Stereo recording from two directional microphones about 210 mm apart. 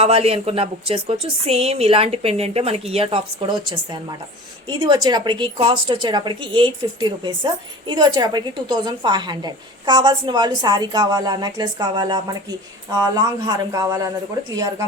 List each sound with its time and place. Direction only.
0.0 s a woman's voice: 30° right (ahead or behind)